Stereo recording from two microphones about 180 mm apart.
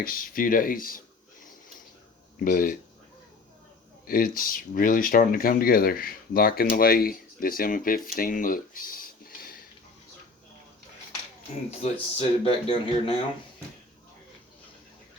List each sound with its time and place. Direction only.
0.0 s speech: 50° left (ahead or behind)
2.4 s speech: 50° left (ahead or behind)
4.0 s speech: 55° left (ahead or behind)
11.7 s speech: 35° left (ahead or behind)